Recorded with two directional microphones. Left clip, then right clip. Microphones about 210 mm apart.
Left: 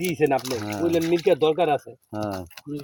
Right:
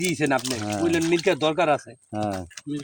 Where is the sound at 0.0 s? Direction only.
45° right (ahead or behind).